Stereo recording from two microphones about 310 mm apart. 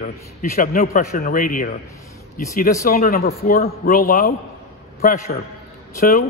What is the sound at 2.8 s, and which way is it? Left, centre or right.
A man's voice, left.